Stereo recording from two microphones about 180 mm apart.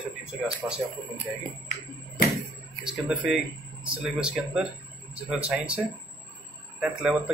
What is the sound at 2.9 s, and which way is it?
Speech, centre (ahead or behind).